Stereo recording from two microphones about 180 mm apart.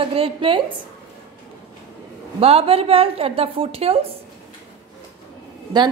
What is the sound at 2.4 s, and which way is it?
A woman's voice, 30° right (ahead or behind).